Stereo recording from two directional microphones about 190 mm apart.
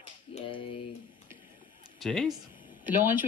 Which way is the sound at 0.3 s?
35° left (ahead or behind).